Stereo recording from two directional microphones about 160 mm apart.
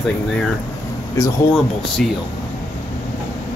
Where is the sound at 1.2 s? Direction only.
20° left (ahead or behind).